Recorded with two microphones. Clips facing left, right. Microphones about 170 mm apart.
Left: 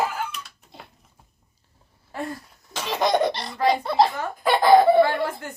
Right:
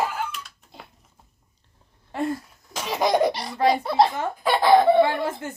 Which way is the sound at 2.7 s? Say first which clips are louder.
Even; 10° right (ahead or behind).